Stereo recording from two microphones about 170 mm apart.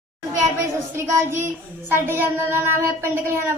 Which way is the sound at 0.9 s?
15° right (ahead or behind).